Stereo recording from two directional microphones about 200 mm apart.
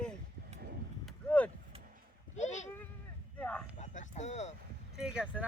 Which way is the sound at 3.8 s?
35° left (ahead or behind).